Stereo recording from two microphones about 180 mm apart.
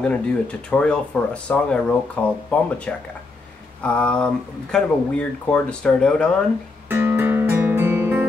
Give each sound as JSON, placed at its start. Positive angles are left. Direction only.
{"t": 0.0, "sound": "speech", "side_deg": 5}
{"t": 6.9, "sound": "music", "side_deg": -10}